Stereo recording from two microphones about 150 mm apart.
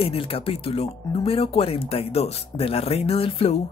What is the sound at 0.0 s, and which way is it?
Speech, 40° left (ahead or behind).